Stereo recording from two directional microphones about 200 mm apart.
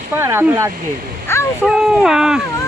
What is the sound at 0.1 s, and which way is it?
Speech, 10° right (ahead or behind).